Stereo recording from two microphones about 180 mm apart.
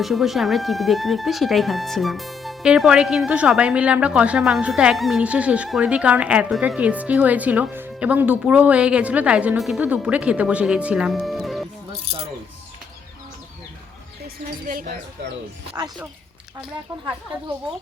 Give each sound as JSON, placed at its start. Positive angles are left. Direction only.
{"t": 0.0, "sound": "speech", "side_deg": 0}
{"t": 14.7, "sound": "speech", "side_deg": -55}
{"t": 16.6, "sound": "speech", "side_deg": -5}